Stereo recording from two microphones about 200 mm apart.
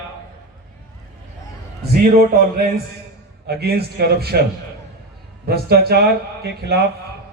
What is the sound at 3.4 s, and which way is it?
Speech, 50° right (ahead or behind).